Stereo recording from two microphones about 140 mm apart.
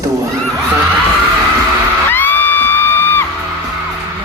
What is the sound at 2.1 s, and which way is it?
Music, 15° left (ahead or behind).